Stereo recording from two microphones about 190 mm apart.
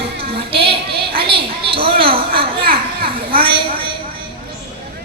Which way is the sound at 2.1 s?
30° right (ahead or behind).